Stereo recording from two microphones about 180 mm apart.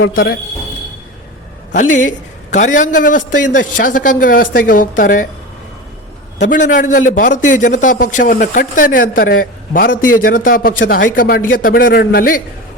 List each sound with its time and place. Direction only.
0.0 s speech: 55° left (ahead or behind)
1.7 s a man's voice: 45° left (ahead or behind)
6.5 s a man's voice: 45° left (ahead or behind)